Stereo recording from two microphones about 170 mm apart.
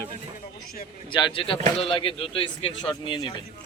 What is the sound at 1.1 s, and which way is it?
A man's voice, 30° left (ahead or behind).